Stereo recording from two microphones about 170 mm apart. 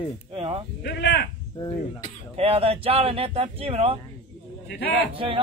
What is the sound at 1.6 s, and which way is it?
Speech, 25° left (ahead or behind).